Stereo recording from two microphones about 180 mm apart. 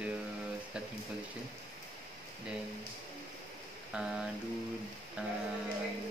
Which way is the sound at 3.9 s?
5° right (ahead or behind).